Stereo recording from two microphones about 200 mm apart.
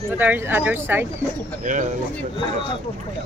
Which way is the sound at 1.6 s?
40° right (ahead or behind).